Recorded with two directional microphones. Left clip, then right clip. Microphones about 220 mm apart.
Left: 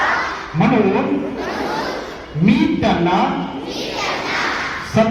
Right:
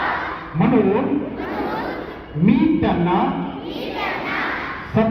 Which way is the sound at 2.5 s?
60° left (ahead or behind).